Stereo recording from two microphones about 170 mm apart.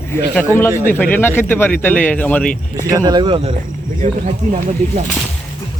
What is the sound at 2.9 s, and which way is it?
Speech, 20° right (ahead or behind).